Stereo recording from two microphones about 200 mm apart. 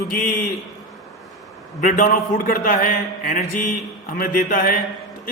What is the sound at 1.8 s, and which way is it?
A man's voice, 40° left (ahead or behind).